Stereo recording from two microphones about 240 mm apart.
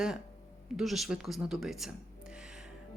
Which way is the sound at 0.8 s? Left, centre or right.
Centre.